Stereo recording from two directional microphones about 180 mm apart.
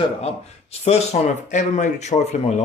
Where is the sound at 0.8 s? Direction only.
35° left (ahead or behind).